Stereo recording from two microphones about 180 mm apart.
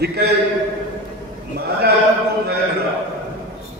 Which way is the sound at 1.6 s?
65° right (ahead or behind).